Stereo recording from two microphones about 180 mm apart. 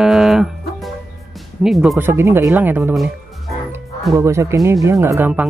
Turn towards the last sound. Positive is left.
turn(degrees=-10)  # may be behind; listen again after turning